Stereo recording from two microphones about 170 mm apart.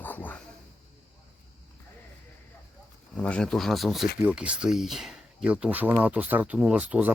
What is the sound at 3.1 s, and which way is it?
Speech, 5° left (ahead or behind).